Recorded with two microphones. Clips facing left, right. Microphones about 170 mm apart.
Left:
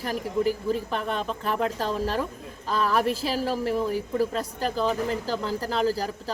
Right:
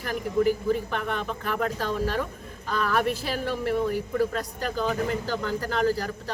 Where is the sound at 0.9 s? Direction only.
30° left (ahead or behind).